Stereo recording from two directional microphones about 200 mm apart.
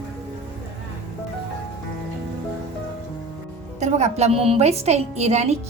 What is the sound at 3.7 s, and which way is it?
A woman's voice, 35° right (ahead or behind).